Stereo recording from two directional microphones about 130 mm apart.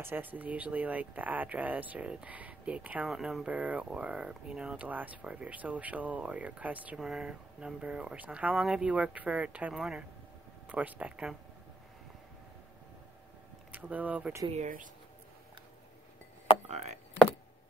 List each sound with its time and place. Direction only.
0.0 s speech: 15° right (ahead or behind)
13.7 s speech: 10° right (ahead or behind)
14.5 s speech: 75° right (ahead or behind)
16.6 s speech: 60° right (ahead or behind)